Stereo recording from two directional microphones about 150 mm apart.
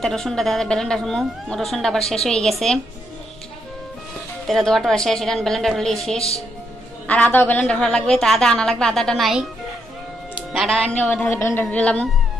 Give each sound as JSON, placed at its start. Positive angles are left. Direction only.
{"t": 0.0, "sound": "a woman's voice", "side_deg": 5}
{"t": 4.5, "sound": "a woman's voice", "side_deg": 0}
{"t": 6.1, "sound": "speech", "side_deg": 40}
{"t": 7.1, "sound": "a woman's voice", "side_deg": 10}
{"t": 10.5, "sound": "a woman's voice", "side_deg": 0}